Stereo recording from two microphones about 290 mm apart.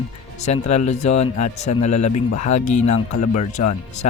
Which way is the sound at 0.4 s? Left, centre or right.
Left.